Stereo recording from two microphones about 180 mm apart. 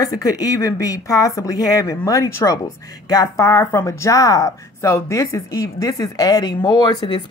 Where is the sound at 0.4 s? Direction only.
20° left (ahead or behind).